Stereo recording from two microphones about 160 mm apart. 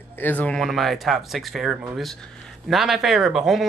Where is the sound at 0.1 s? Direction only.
10° left (ahead or behind).